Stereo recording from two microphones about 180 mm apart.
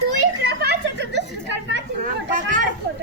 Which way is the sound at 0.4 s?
65° right (ahead or behind).